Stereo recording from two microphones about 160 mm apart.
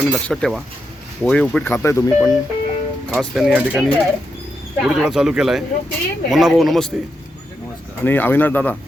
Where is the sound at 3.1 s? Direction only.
Centre (ahead or behind).